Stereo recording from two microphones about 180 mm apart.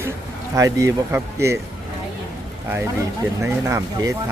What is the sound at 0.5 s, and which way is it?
Speech, 15° right (ahead or behind).